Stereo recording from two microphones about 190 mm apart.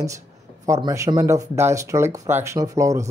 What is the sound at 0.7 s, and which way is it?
Speech, 15° right (ahead or behind).